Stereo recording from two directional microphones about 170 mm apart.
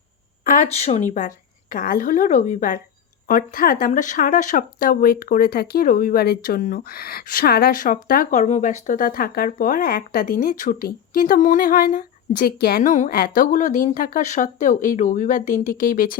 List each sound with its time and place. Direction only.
0.4 s speech: 45° left (ahead or behind)
1.7 s a woman's voice: 55° left (ahead or behind)